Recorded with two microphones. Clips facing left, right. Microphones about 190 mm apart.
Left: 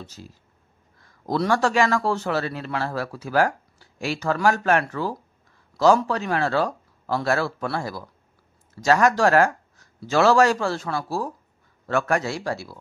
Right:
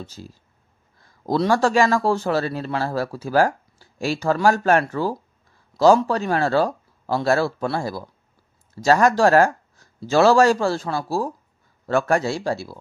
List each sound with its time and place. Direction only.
0.0 s a man's voice: 30° right (ahead or behind)